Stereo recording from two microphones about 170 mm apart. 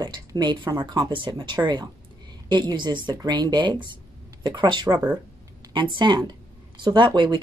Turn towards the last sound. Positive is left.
turn(degrees=-30)  # may be behind; listen again after turning